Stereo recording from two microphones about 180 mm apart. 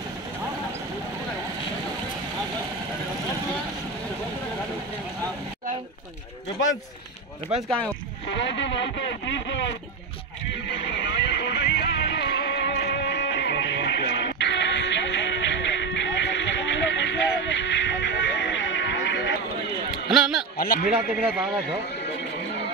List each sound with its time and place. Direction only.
8.3 s a sound: 85° left
10.7 s music: 80° left
20.1 s a man's voice: 5° right (ahead or behind)
20.5 s speech: 55° left (ahead or behind)
21.1 s a man's voice: 10° right (ahead or behind)
22.0 s neigh: 70° left (ahead or behind)